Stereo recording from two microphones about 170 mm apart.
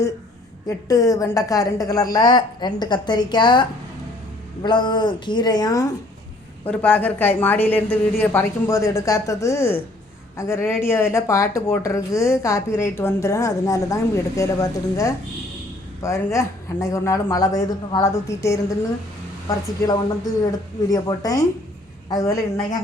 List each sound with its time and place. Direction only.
0.9 s a woman's voice: 20° left (ahead or behind)
6.7 s a woman's voice: 10° left (ahead or behind)